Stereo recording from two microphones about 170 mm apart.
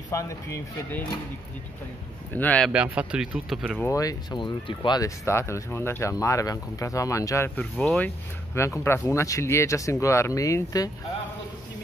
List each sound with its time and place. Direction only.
0.1 s speech: 20° left (ahead or behind)
2.3 s speech: 10° left (ahead or behind)
2.7 s speech: 5° right (ahead or behind)
3.8 s speech: 20° left (ahead or behind)
7.7 s speech: 5° left (ahead or behind)
8.8 s speech: 15° left (ahead or behind)